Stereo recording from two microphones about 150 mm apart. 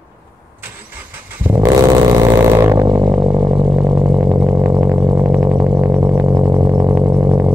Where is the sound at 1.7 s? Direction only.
25° right (ahead or behind).